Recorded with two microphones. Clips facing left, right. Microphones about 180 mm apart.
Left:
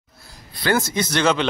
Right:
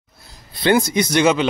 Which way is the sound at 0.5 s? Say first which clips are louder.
Right 5 dB; 20° right (ahead or behind).